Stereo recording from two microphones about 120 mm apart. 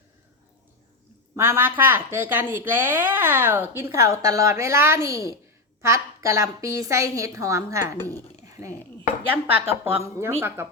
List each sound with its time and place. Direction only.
1.4 s a woman's voice: 20° right (ahead or behind)
8.1 s dishes: 25° right (ahead or behind)
9.3 s a woman's voice: 20° right (ahead or behind)